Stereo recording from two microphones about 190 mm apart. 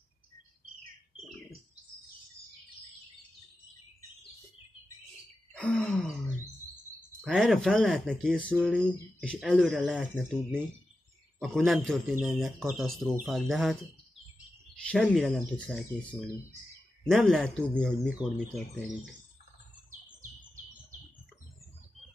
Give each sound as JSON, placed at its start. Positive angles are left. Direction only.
{"t": 5.5, "sound": "grunt", "side_deg": 5}
{"t": 7.2, "sound": "speech", "side_deg": 0}
{"t": 15.0, "sound": "speech", "side_deg": 0}
{"t": 19.9, "sound": "bird", "side_deg": -40}